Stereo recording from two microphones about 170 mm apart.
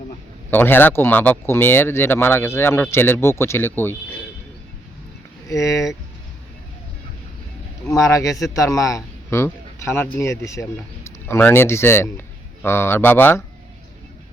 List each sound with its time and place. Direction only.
0.5 s speech: 10° left (ahead or behind)
5.5 s speech: 20° left (ahead or behind)
7.9 s a man's voice: 20° left (ahead or behind)